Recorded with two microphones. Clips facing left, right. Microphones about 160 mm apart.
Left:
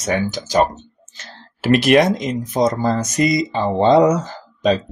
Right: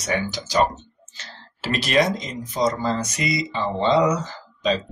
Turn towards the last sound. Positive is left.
turn(degrees=50)  # may be behind; listen again after turning